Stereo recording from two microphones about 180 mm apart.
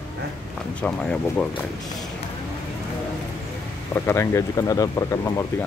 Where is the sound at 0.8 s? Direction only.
5° left (ahead or behind).